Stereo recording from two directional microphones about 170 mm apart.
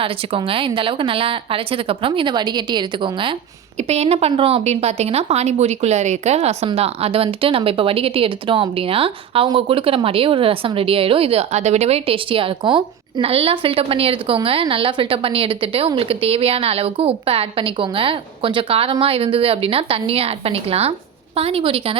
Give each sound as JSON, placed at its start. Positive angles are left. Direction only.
{"t": 0.0, "sound": "a woman's voice", "side_deg": -30}